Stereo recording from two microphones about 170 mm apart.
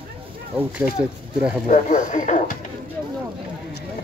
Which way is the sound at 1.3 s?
5° right (ahead or behind).